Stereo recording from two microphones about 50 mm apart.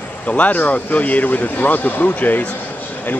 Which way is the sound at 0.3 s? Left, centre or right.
Left.